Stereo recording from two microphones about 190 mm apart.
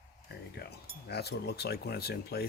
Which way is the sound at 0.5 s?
55° left (ahead or behind).